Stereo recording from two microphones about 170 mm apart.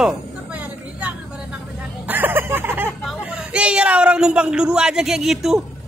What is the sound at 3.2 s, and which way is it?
A man's voice, 5° right (ahead or behind).